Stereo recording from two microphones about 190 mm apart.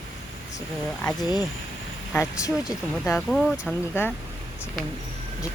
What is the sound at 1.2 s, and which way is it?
Speech, 20° left (ahead or behind).